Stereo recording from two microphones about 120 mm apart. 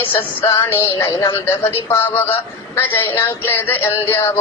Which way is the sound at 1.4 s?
20° left (ahead or behind).